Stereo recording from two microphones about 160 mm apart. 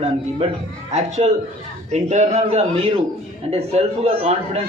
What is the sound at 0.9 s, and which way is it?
A man's voice, 45° right (ahead or behind).